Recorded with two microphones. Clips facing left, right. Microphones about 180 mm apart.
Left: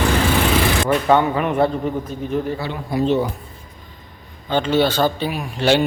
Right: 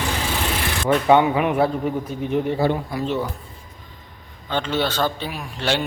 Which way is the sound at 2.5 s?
50° right (ahead or behind).